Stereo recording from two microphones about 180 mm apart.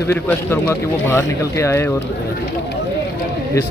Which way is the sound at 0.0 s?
15° left (ahead or behind).